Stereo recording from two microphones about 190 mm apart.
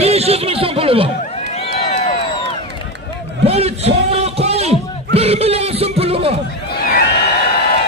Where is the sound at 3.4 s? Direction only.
30° right (ahead or behind).